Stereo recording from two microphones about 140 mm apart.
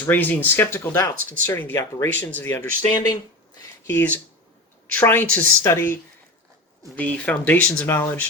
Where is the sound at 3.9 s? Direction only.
10° left (ahead or behind).